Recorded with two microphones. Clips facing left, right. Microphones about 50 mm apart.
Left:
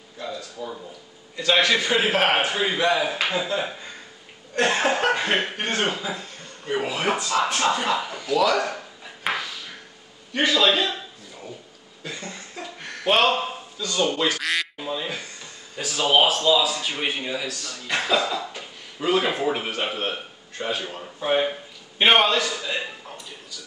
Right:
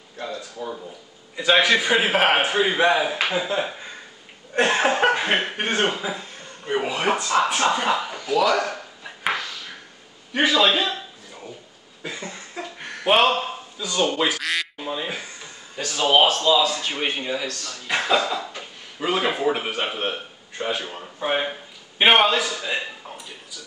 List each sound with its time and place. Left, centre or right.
0.6 s a man's voice: centre
10.3 s a sound: centre
14.4 s speech: centre
14.9 s speech: centre
15.8 s speech: centre
23.0 s a sound: centre